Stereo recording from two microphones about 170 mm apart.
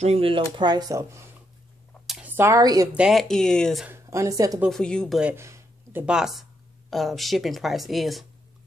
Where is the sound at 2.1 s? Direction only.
10° right (ahead or behind).